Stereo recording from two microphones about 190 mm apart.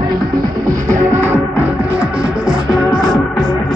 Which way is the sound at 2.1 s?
Centre (ahead or behind).